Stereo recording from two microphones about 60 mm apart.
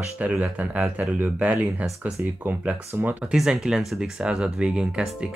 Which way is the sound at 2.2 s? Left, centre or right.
Right.